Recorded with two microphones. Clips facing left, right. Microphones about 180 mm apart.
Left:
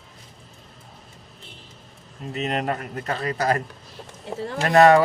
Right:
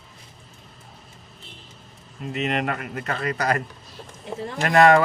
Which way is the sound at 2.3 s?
35° left (ahead or behind).